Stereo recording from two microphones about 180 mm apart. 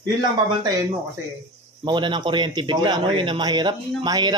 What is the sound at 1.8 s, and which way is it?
A man's voice, 25° right (ahead or behind).